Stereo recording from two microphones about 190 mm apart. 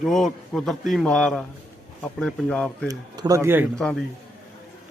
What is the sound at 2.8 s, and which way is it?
Speech, 20° right (ahead or behind).